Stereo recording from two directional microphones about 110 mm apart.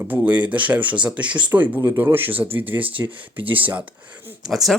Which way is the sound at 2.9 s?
50° right (ahead or behind).